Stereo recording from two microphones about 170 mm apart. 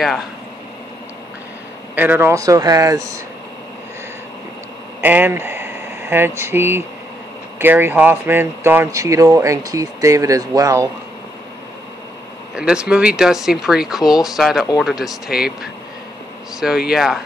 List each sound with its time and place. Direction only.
2.0 s speech: 10° right (ahead or behind)
5.0 s speech: 10° right (ahead or behind)
12.5 s speech: 5° right (ahead or behind)